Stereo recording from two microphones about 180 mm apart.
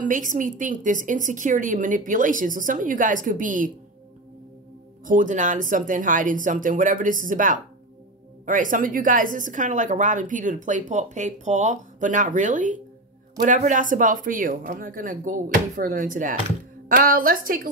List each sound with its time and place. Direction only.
0.0 s a woman's voice: 45° right (ahead or behind)
5.0 s a woman's voice: 45° right (ahead or behind)